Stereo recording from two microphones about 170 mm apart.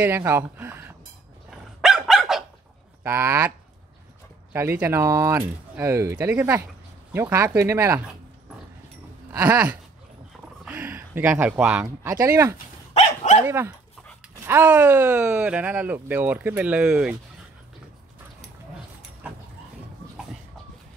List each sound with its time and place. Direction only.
0.0 s speech: 15° right (ahead or behind)
1.5 s dog: 5° right (ahead or behind)
3.0 s speech: 15° right (ahead or behind)
9.3 s speech: 10° right (ahead or behind)
12.9 s dog: 45° left (ahead or behind)
13.5 s speech: 15° right (ahead or behind)